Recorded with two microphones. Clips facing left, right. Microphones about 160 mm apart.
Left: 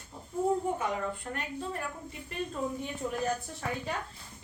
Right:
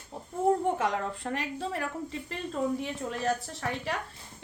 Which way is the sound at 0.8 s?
90° right.